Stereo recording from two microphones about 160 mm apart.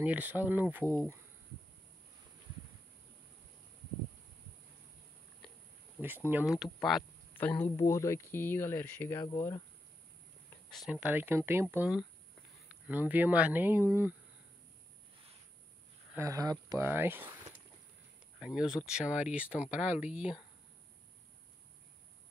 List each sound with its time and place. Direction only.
0.0 s speech: 10° right (ahead or behind)
5.9 s speech: 10° right (ahead or behind)
7.3 s speech: 10° left (ahead or behind)
10.7 s speech: 5° right (ahead or behind)
16.2 s speech: 20° right (ahead or behind)
18.4 s speech: 5° right (ahead or behind)